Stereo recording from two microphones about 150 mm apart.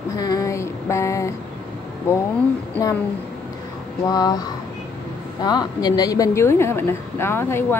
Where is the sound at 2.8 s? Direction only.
10° left (ahead or behind).